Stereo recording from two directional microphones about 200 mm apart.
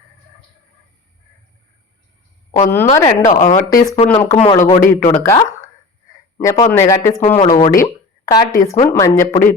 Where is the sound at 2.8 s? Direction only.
20° left (ahead or behind).